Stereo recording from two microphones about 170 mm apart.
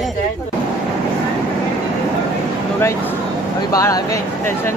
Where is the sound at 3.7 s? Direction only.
20° left (ahead or behind).